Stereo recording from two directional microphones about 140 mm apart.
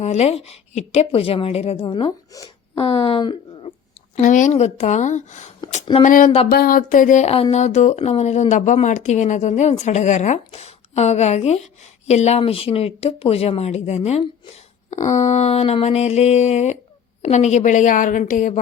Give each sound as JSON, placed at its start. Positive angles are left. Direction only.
{"t": 0.0, "sound": "speech", "side_deg": 50}
{"t": 2.3, "sound": "speech", "side_deg": 25}
{"t": 2.7, "sound": "speech", "side_deg": 45}
{"t": 4.2, "sound": "a woman's voice", "side_deg": 65}
{"t": 4.5, "sound": "a woman's voice", "side_deg": 50}
{"t": 6.0, "sound": "a sound", "side_deg": 70}
{"t": 6.6, "sound": "a sound", "side_deg": 90}
{"t": 7.5, "sound": "a woman's voice", "side_deg": 55}